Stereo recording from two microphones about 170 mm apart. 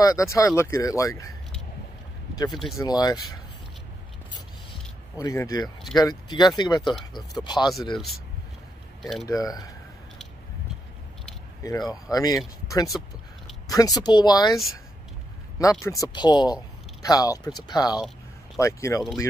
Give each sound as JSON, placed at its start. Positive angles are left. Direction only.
{"t": 0.0, "sound": "speech", "side_deg": 20}
{"t": 2.3, "sound": "speech", "side_deg": 25}
{"t": 5.1, "sound": "speech", "side_deg": 20}
{"t": 9.0, "sound": "speech", "side_deg": 0}
{"t": 9.3, "sound": "speech", "side_deg": 20}
{"t": 12.1, "sound": "speech", "side_deg": 20}
{"t": 15.8, "sound": "speech", "side_deg": 20}